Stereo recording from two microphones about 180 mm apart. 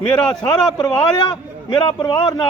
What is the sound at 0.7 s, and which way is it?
Speech, 25° left (ahead or behind).